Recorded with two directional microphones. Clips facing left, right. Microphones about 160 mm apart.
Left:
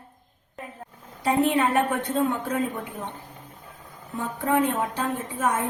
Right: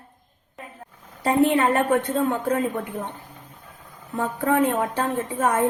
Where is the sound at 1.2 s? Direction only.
55° right (ahead or behind).